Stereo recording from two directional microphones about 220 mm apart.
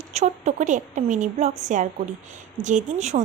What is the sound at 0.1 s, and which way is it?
Speech, 30° right (ahead or behind).